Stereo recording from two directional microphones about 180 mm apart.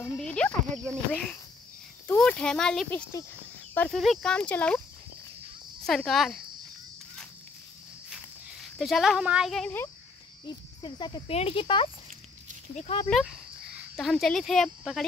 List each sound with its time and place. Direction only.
0.2 s a sound: 5° left (ahead or behind)
1.1 s speech: 5° left (ahead or behind)
5.9 s speech: centre (ahead or behind)
8.7 s speech: centre (ahead or behind)
10.4 s speech: 25° left (ahead or behind)
13.1 s speech: centre (ahead or behind)